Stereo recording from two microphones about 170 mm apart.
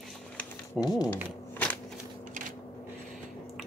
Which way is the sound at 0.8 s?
20° left (ahead or behind).